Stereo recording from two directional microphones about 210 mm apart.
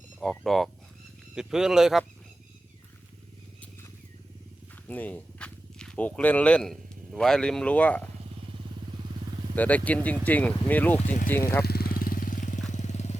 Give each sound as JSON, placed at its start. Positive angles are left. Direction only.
{"t": 0.2, "sound": "speech", "side_deg": 0}
{"t": 4.9, "sound": "speech", "side_deg": 10}
{"t": 9.6, "sound": "speech", "side_deg": 5}
{"t": 11.0, "sound": "speech", "side_deg": 35}
{"t": 11.3, "sound": "speech", "side_deg": 10}
{"t": 11.6, "sound": "vehicle", "side_deg": 45}